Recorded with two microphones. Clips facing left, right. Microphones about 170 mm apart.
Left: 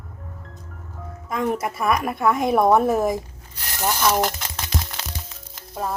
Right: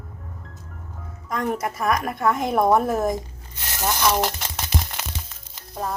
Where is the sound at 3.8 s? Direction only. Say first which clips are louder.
Left 1 dB; 15° left (ahead or behind).